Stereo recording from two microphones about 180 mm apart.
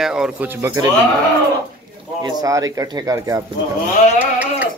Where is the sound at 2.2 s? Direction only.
20° right (ahead or behind).